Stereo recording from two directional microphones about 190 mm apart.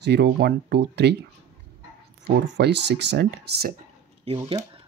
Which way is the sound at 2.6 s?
65° right (ahead or behind).